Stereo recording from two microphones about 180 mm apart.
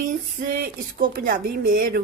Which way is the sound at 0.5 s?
55° right (ahead or behind).